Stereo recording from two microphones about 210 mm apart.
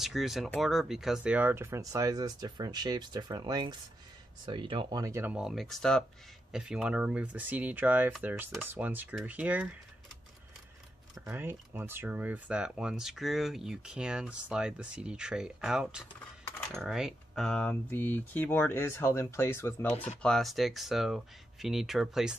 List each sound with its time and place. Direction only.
0.0 s speech: centre (ahead or behind)
11.1 s speech: 10° right (ahead or behind)